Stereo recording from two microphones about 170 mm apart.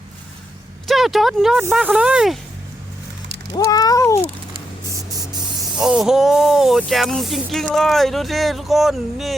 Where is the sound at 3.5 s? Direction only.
20° left (ahead or behind).